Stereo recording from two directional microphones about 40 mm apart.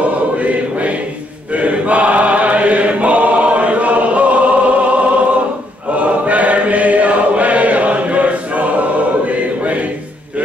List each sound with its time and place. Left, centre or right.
0.4 s choir: right
1.5 s chant: right